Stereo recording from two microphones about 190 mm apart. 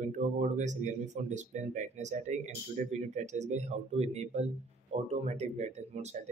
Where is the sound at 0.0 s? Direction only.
40° right (ahead or behind).